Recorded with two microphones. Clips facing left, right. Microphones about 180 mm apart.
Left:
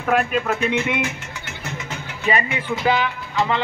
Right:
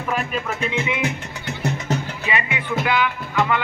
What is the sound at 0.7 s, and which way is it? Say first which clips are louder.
Speech: left 3 dB; 60° left (ahead or behind).